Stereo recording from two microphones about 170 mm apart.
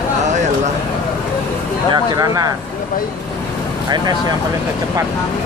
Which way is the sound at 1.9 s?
20° right (ahead or behind).